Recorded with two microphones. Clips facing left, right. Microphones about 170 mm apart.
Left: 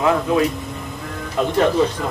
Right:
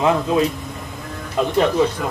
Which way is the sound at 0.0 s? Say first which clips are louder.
Even; 20° right (ahead or behind).